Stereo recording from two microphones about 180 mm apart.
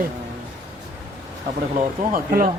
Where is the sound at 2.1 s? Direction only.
50° right (ahead or behind).